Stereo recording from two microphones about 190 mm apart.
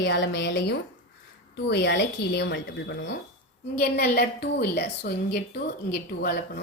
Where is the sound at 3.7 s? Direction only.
55° left (ahead or behind).